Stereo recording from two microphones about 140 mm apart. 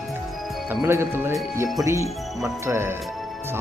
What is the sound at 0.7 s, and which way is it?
Speech, 15° right (ahead or behind).